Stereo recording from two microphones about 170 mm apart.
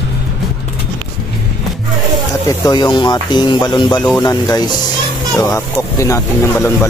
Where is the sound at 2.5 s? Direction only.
25° left (ahead or behind).